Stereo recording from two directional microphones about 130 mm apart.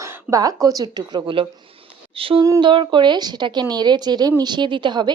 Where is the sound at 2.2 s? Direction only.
45° right (ahead or behind).